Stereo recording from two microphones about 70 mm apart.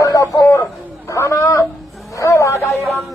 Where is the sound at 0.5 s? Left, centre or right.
Left.